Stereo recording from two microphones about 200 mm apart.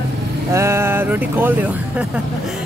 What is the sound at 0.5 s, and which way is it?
Speech, 15° right (ahead or behind).